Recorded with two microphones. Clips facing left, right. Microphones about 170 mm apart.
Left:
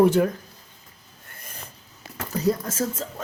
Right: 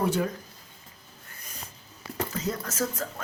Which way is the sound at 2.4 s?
30° left (ahead or behind).